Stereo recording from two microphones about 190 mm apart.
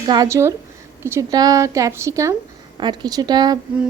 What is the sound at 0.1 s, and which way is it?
Speech, 15° right (ahead or behind).